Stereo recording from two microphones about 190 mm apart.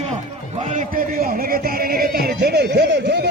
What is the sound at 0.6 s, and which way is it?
Speech, 45° right (ahead or behind).